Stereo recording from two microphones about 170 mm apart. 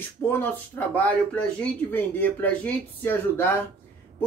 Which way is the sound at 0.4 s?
10° left (ahead or behind).